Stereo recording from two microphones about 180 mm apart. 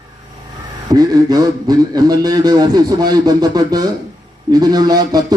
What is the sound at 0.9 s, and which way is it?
A man's voice, 20° right (ahead or behind).